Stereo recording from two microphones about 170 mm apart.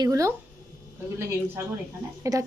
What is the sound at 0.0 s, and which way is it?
Speech, 20° right (ahead or behind).